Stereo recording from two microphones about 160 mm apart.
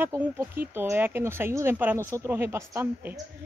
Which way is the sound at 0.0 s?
15° right (ahead or behind).